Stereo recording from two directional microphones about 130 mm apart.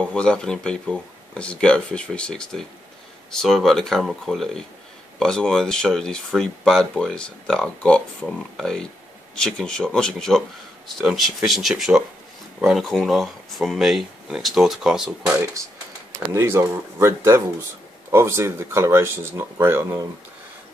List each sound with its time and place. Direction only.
0.0 s speech: 5° left (ahead or behind)
16.1 s speech: 20° right (ahead or behind)